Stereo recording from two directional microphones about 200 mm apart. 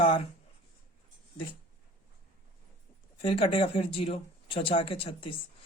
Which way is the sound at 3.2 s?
25° left (ahead or behind).